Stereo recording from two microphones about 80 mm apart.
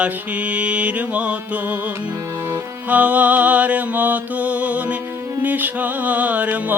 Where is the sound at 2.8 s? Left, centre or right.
Centre.